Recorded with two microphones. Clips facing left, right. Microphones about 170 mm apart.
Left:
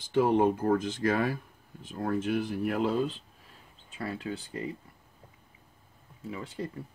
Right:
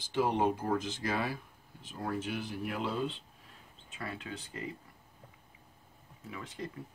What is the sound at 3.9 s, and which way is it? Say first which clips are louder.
Speech: left 6 dB; 35° left (ahead or behind).